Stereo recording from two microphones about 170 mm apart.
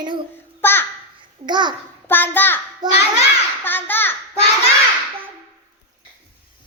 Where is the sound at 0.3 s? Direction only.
10° left (ahead or behind).